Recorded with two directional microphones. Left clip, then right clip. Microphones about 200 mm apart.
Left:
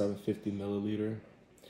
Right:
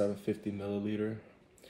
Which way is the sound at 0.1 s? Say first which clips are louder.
Even; 15° left (ahead or behind).